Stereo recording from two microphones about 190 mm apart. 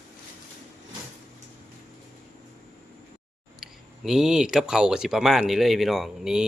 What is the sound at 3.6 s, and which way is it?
Speech, centre (ahead or behind).